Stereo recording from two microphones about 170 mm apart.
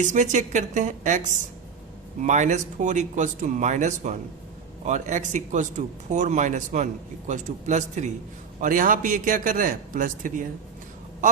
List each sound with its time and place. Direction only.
0.0 s speech: 45° right (ahead or behind)